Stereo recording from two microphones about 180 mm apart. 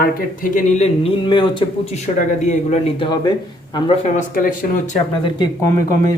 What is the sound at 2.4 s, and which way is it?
Speech, 40° left (ahead or behind).